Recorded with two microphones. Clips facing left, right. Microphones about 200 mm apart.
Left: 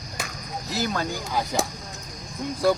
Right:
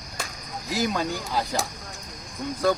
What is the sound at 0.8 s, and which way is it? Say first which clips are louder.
Speech: right 1 dB; centre (ahead or behind).